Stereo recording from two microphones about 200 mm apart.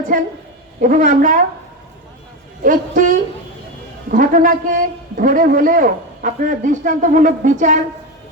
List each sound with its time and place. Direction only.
0.1 s a woman's voice: 40° right (ahead or behind)
2.6 s a man's voice: 40° right (ahead or behind)